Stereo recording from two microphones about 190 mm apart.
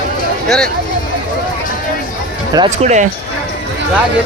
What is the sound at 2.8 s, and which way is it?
Speech, 35° right (ahead or behind).